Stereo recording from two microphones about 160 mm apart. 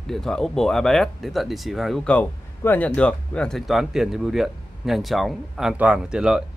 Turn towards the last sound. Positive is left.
turn(degrees=-5)  # may be behind; listen again after turning